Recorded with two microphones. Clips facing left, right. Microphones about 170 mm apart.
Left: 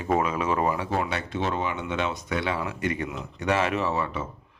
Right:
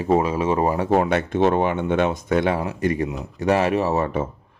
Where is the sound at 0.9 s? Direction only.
55° right (ahead or behind).